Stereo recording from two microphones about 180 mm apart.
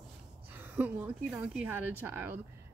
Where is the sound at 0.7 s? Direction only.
10° right (ahead or behind).